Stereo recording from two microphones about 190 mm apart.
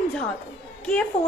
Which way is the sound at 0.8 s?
5° left (ahead or behind).